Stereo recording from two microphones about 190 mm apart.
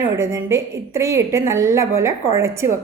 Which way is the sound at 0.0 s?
15° right (ahead or behind).